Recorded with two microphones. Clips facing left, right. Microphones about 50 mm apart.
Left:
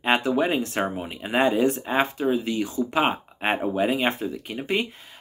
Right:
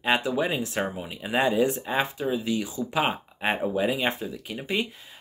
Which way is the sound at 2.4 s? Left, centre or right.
Left.